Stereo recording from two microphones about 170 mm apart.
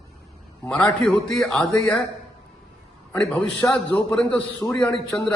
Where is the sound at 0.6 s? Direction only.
5° left (ahead or behind).